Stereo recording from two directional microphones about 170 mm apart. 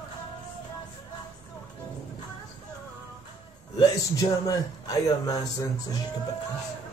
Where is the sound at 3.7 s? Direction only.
20° left (ahead or behind).